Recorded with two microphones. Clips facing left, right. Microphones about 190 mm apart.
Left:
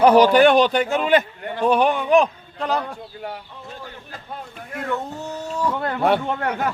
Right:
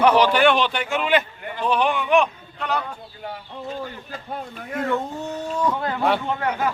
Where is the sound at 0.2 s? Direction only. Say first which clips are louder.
Left 4 dB; 45° left (ahead or behind).